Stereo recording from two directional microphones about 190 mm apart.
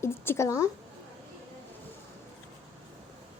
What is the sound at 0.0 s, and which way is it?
Speech, 15° left (ahead or behind).